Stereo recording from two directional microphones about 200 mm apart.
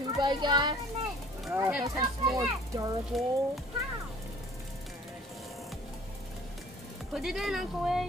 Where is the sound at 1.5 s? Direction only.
10° right (ahead or behind).